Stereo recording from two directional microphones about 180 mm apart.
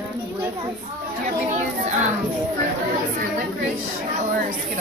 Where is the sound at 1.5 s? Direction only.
45° right (ahead or behind).